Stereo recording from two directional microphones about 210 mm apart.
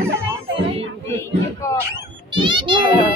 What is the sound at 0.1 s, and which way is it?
Children playing, 10° right (ahead or behind).